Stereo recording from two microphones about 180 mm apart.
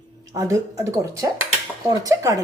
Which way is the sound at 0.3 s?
15° right (ahead or behind).